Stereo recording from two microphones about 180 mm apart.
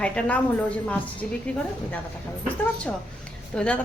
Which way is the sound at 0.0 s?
5° left (ahead or behind).